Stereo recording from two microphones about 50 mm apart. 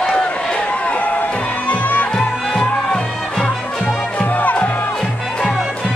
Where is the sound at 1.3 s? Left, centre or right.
Left.